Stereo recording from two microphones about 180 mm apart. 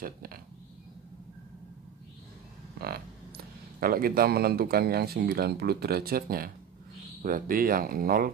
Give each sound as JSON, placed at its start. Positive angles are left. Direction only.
{"t": 0.0, "sound": "speech", "side_deg": -55}
{"t": 3.8, "sound": "speech", "side_deg": -55}